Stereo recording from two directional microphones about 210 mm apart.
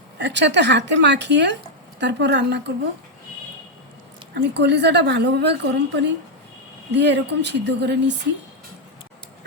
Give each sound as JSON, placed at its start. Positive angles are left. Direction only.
{"t": 0.2, "sound": "a woman's voice", "side_deg": -55}
{"t": 4.4, "sound": "a woman's voice", "side_deg": -55}